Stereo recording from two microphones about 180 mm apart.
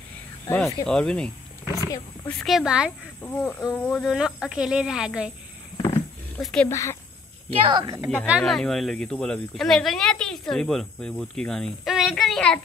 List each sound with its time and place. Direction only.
0.5 s speech: 15° left (ahead or behind)
0.8 s speech: 5° left (ahead or behind)
1.8 s a sound: 20° left (ahead or behind)
2.2 s speech: centre (ahead or behind)
3.4 s speech: 10° left (ahead or behind)
3.9 s speech: centre (ahead or behind)
6.3 s speech: 5° left (ahead or behind)
6.7 s speech: 15° left (ahead or behind)
7.7 s speech: 20° right (ahead or behind)
8.3 s speech: centre (ahead or behind)